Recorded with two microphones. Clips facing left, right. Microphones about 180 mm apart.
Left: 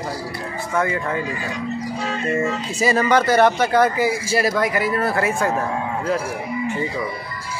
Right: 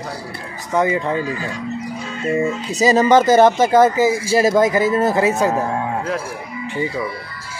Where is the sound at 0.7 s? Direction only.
20° right (ahead or behind).